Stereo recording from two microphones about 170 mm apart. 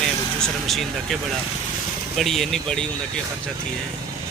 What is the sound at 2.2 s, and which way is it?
Speech, centre (ahead or behind).